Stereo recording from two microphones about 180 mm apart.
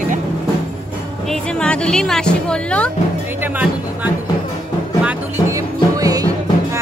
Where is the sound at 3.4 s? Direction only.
10° right (ahead or behind).